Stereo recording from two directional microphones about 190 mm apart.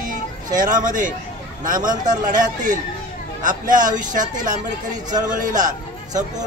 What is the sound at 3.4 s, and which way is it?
Speech, 45° right (ahead or behind).